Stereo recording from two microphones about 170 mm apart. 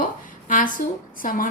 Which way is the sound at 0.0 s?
50° left (ahead or behind).